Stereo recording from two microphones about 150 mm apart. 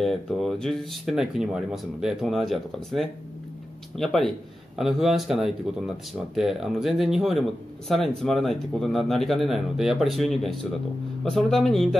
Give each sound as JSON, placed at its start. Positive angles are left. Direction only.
{"t": 0.0, "sound": "speech", "side_deg": 0}